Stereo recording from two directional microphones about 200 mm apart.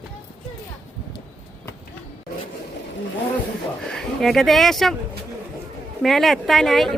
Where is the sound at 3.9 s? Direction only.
Centre (ahead or behind).